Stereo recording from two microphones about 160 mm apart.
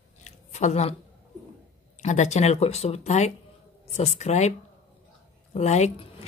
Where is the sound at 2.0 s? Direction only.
50° left (ahead or behind).